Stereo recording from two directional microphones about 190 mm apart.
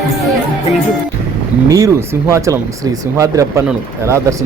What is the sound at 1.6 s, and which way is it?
Speech, 15° right (ahead or behind).